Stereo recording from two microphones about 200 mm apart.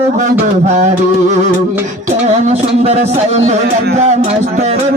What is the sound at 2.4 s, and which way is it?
Music, 30° right (ahead or behind).